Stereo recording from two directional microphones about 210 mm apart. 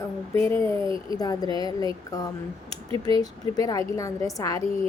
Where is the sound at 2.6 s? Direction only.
25° right (ahead or behind).